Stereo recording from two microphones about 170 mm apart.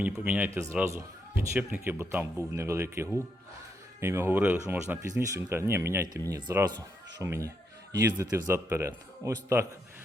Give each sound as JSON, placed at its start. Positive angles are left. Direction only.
{"t": 0.0, "sound": "speech", "side_deg": -10}